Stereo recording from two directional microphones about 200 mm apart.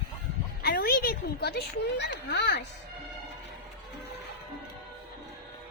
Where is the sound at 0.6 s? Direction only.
50° left (ahead or behind).